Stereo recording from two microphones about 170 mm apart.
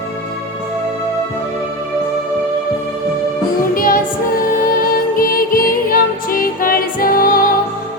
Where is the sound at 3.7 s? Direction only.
55° left (ahead or behind).